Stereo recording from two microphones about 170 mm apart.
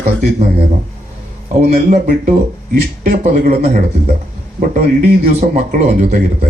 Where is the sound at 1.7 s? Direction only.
45° right (ahead or behind).